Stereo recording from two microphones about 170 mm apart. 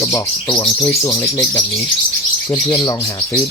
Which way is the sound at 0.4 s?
30° left (ahead or behind).